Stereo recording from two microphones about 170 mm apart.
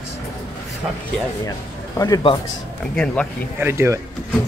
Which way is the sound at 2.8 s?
5° left (ahead or behind).